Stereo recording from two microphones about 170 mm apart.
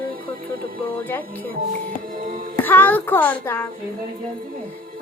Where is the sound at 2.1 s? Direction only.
55° right (ahead or behind).